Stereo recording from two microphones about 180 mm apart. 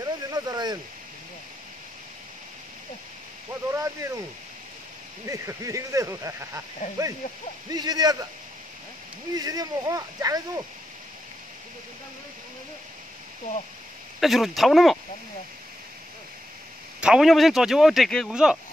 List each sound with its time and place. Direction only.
0.0 s a sound: 20° right (ahead or behind)
3.7 s speech: 15° right (ahead or behind)
5.2 s speech: 15° right (ahead or behind)
9.3 s speech: 20° right (ahead or behind)
14.2 s speech: centre (ahead or behind)
17.0 s speech: 5° right (ahead or behind)